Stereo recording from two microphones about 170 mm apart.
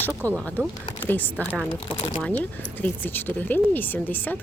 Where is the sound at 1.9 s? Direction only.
30° left (ahead or behind).